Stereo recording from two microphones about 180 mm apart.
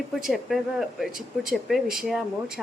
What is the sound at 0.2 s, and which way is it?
Speech, centre (ahead or behind).